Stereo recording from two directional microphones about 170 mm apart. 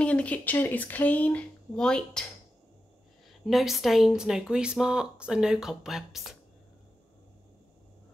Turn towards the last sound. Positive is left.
turn(degrees=0)  # may be behind; listen again after turning